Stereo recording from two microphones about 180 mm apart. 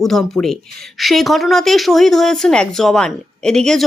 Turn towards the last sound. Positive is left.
turn(degrees=5)  # may be behind; listen again after turning